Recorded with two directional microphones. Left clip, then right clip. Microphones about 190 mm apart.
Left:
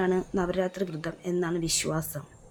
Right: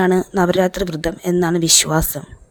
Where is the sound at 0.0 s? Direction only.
50° right (ahead or behind).